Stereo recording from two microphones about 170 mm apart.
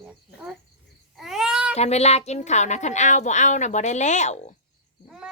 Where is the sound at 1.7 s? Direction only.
40° left (ahead or behind).